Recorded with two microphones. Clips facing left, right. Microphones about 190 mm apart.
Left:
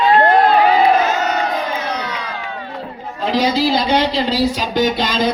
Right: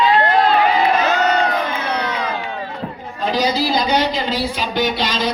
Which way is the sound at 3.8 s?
30° left (ahead or behind).